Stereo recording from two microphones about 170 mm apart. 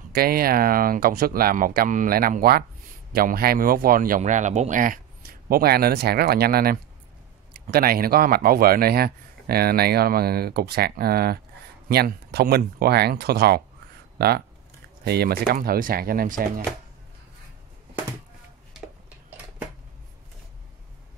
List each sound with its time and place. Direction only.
0.1 s speech: 60° right (ahead or behind)
4.2 s speech: 45° right (ahead or behind)